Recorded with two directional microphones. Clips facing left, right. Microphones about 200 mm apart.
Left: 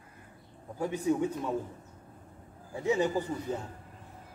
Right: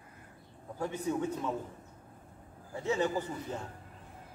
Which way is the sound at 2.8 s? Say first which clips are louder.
Left 3 dB; 15° left (ahead or behind).